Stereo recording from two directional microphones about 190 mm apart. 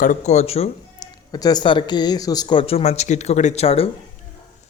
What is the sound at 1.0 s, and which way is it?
Speech, 20° left (ahead or behind).